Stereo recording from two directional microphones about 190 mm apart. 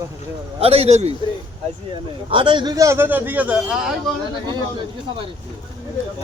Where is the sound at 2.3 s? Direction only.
25° right (ahead or behind); by 4.2 s 5° left (ahead or behind).